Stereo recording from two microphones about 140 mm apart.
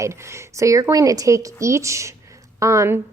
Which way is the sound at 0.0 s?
20° right (ahead or behind).